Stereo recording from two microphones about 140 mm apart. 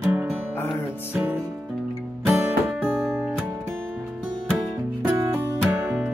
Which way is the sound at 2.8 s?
5° right (ahead or behind).